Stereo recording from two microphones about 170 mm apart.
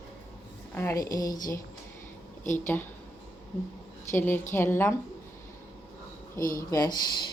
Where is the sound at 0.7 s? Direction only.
15° left (ahead or behind).